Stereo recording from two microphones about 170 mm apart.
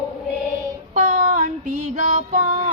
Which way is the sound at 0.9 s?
45° right (ahead or behind).